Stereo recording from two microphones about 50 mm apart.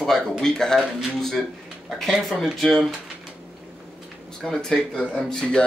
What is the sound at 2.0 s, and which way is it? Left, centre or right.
Speech, centre.